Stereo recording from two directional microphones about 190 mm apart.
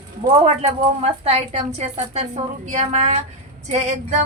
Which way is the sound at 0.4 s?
35° right (ahead or behind).